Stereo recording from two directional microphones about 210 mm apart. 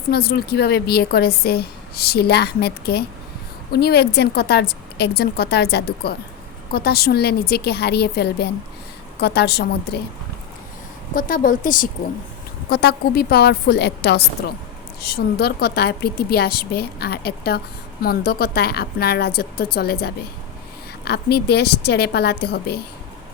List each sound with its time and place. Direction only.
0.1 s a woman's voice: 45° left (ahead or behind)
11.1 s a woman's voice: 40° left (ahead or behind)